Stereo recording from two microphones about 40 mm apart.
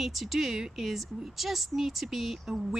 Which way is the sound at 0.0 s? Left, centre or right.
Centre.